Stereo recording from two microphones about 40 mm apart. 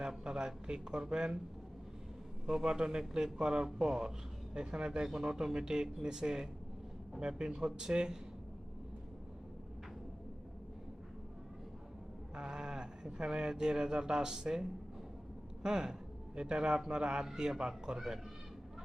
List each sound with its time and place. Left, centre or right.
0.3 s speech: centre
2.5 s speech: centre
12.4 s speech: right